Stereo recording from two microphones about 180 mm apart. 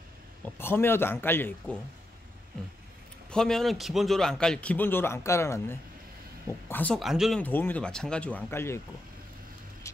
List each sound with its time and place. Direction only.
0.6 s speech: 10° left (ahead or behind)
3.3 s a man's voice: 5° left (ahead or behind)
7.4 s speech: 10° left (ahead or behind)
9.8 s vehicle: 15° left (ahead or behind)